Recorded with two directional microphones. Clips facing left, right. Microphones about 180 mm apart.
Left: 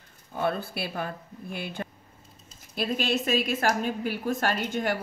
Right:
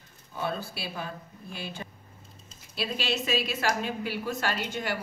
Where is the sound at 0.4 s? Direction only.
55° left (ahead or behind).